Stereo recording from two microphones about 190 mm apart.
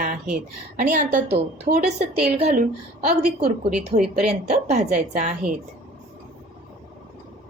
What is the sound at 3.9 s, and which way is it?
A woman's voice, 40° right (ahead or behind).